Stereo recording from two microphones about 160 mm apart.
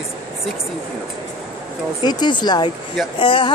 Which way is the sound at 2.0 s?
25° left (ahead or behind).